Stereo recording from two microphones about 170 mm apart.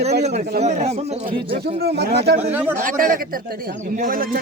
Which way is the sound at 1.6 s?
70° right (ahead or behind).